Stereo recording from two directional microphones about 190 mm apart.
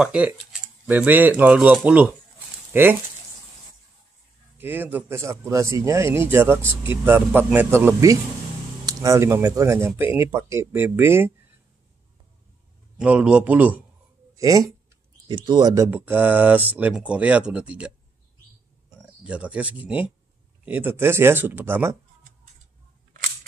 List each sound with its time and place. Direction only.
0.0 s speech: 5° right (ahead or behind)
4.6 s speech: 10° right (ahead or behind)
12.9 s speech: 5° right (ahead or behind)